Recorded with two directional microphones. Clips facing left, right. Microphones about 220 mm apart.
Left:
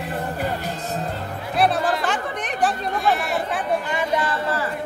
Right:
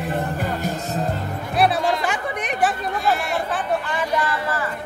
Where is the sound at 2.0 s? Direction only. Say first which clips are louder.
Even; 10° right (ahead or behind).